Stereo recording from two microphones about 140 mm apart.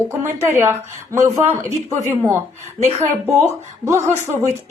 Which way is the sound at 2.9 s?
55° right (ahead or behind).